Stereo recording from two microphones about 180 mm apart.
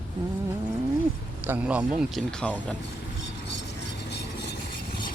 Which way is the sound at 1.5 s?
5° right (ahead or behind).